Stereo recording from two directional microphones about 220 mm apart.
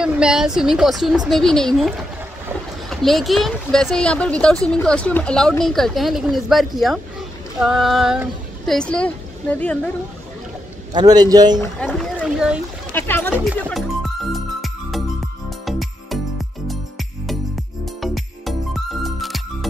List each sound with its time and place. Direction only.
0.0 s speech: 5° right (ahead or behind)
10.9 s a man's voice: 20° right (ahead or behind)
11.8 s a sound: 5° left (ahead or behind)
12.9 s music: 10° left (ahead or behind)
18.0 s music: centre (ahead or behind)